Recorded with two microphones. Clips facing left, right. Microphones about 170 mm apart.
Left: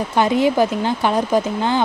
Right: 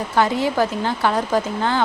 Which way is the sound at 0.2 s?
20° left (ahead or behind).